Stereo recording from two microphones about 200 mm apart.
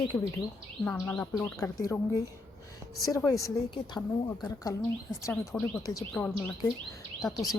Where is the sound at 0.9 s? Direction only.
10° left (ahead or behind).